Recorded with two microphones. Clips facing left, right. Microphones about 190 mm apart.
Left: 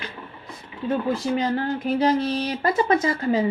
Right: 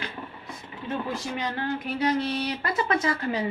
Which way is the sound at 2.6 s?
30° left (ahead or behind).